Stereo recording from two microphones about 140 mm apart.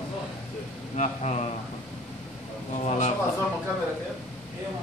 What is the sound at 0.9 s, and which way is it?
Speech, 55° left (ahead or behind).